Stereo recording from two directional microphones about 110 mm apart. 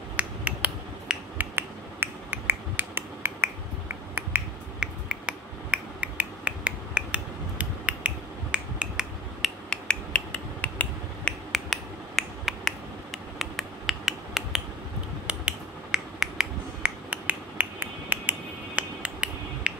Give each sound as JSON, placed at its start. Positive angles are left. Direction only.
{"t": 0.1, "sound": "finger snapping", "side_deg": -10}
{"t": 9.7, "sound": "finger snapping", "side_deg": 10}